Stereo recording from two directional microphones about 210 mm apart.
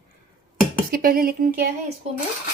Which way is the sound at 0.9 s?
45° right (ahead or behind).